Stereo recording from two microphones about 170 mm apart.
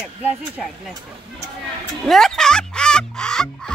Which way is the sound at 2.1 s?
Centre (ahead or behind).